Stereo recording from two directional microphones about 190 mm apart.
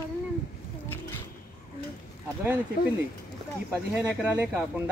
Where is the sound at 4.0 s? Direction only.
10° right (ahead or behind).